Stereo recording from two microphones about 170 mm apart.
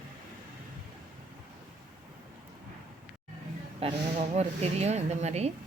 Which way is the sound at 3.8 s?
35° right (ahead or behind).